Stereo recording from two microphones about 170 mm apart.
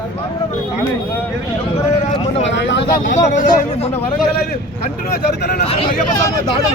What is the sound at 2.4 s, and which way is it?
Speech, 90° left.